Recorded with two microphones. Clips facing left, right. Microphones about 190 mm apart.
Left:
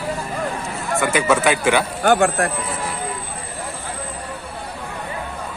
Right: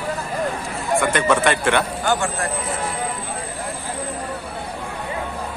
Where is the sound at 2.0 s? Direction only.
55° left (ahead or behind).